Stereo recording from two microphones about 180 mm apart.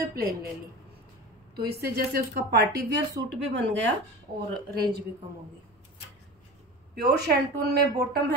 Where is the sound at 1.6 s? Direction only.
65° right (ahead or behind).